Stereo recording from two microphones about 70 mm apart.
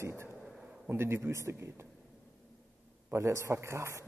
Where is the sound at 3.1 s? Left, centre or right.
Right.